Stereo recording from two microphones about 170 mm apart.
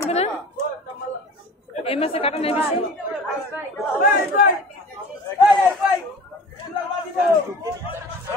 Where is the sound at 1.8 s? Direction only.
35° left (ahead or behind).